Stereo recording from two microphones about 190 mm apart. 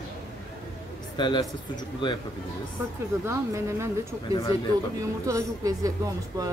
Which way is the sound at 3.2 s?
15° right (ahead or behind).